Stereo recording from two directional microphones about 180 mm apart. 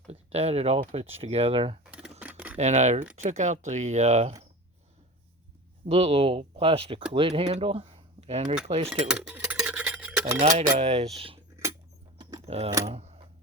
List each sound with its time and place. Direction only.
0.1 s speech: 35° right (ahead or behind)
1.8 s computer keyboard: 5° right (ahead or behind)
2.6 s speech: 40° right (ahead or behind)
5.8 s speech: 35° right (ahead or behind)
9.0 s stir: 5° right (ahead or behind)
10.7 s speech: 35° right (ahead or behind)
12.5 s speech: 35° right (ahead or behind)